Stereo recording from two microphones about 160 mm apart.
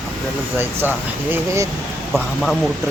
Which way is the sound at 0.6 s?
10° right (ahead or behind).